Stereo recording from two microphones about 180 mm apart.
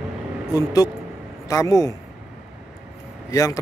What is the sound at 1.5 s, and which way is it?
Speech, 20° left (ahead or behind).